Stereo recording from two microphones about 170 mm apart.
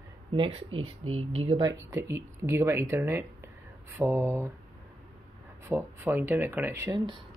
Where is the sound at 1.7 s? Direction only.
20° right (ahead or behind).